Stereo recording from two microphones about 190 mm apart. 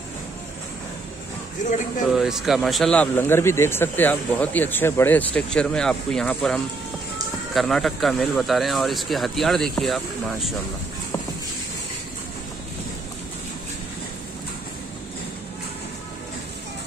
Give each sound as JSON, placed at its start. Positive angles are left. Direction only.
{"t": 1.6, "sound": "speech", "side_deg": 40}
{"t": 2.1, "sound": "speech", "side_deg": 0}